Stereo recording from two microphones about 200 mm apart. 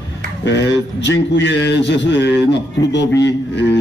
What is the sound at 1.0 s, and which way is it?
Speech, 60° left (ahead or behind).